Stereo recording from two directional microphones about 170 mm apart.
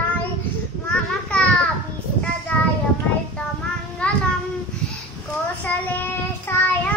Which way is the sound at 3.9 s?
5° left (ahead or behind).